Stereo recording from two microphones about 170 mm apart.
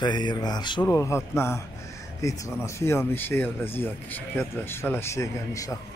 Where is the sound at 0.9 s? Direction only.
15° left (ahead or behind).